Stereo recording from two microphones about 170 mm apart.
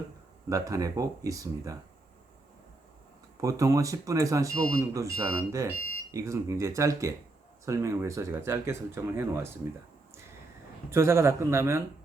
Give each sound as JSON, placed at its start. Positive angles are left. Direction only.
{"t": 0.5, "sound": "speech", "side_deg": -20}
{"t": 3.4, "sound": "speech", "side_deg": -20}
{"t": 10.8, "sound": "speech", "side_deg": -15}